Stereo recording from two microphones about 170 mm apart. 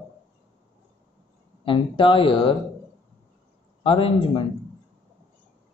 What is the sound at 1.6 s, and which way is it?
Speech, 30° left (ahead or behind).